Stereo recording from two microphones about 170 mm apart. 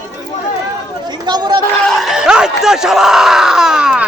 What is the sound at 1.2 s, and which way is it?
Speech, 25° right (ahead or behind).